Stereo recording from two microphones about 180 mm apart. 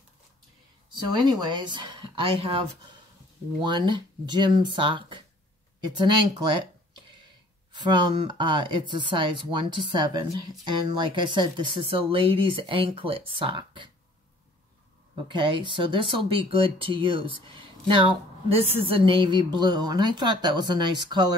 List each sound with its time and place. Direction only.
1.0 s speech: 20° right (ahead or behind)
3.6 s speech: 25° right (ahead or behind)
7.9 s speech: 25° right (ahead or behind)
15.2 s speech: 30° right (ahead or behind)